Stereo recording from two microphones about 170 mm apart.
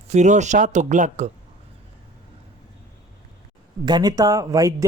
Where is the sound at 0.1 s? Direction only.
45° right (ahead or behind).